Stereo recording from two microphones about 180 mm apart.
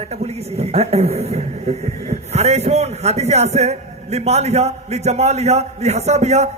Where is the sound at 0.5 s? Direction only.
35° right (ahead or behind).